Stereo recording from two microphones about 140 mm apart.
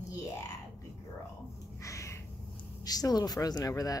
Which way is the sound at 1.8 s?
20° left (ahead or behind).